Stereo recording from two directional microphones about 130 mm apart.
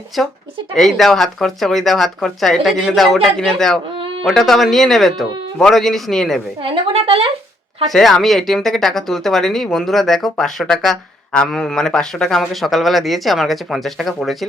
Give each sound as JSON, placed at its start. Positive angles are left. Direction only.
{"t": 0.1, "sound": "speech", "side_deg": 0}
{"t": 6.6, "sound": "speech", "side_deg": -45}
{"t": 7.9, "sound": "speech", "side_deg": 0}